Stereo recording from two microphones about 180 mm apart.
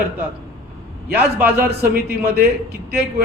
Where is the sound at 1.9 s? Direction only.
55° right (ahead or behind).